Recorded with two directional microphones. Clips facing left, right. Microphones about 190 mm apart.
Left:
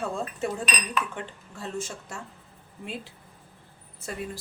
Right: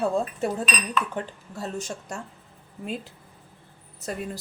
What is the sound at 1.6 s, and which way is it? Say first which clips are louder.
Speech: right 2 dB; 40° right (ahead or behind).